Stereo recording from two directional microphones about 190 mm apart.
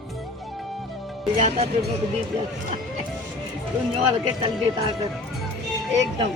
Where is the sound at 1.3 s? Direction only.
35° right (ahead or behind).